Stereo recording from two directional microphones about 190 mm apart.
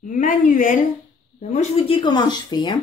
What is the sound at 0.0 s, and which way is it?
Speech, 45° left (ahead or behind).